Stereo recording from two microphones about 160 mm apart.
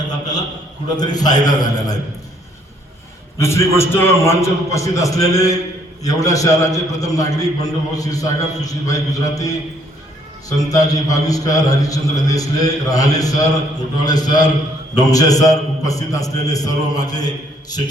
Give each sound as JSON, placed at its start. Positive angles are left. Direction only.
{"t": 0.9, "sound": "a man's voice", "side_deg": 25}
{"t": 3.3, "sound": "a man's voice", "side_deg": 15}
{"t": 10.7, "sound": "a man's voice", "side_deg": 20}